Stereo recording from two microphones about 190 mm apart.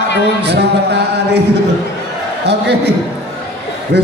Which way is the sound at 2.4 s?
65° right (ahead or behind).